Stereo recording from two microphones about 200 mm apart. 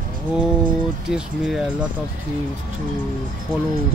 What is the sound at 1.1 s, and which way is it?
Speech, 5° right (ahead or behind).